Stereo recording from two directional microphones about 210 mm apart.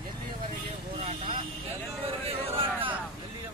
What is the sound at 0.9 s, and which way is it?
Vehicle, 25° right (ahead or behind).